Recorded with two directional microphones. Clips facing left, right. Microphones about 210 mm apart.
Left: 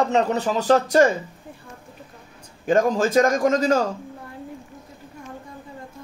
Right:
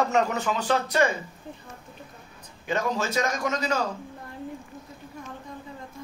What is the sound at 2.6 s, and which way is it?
A man's voice, 50° left (ahead or behind).